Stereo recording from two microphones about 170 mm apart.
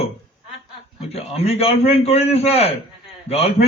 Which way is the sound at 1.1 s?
35° left (ahead or behind).